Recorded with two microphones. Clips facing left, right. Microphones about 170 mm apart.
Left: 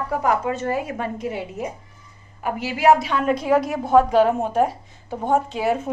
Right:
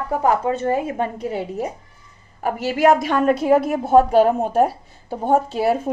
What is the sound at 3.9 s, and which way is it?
A woman's voice, 35° right (ahead or behind).